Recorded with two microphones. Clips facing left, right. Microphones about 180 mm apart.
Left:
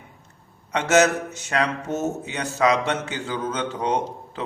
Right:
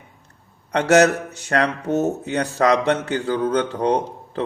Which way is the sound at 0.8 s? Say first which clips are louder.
Right 4 dB; 60° right (ahead or behind).